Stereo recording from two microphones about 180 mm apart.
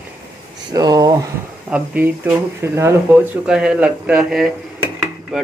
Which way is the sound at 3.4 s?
5° right (ahead or behind).